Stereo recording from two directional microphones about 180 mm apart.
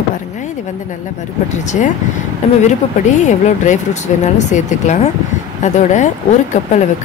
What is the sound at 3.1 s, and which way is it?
Speech, 45° left (ahead or behind).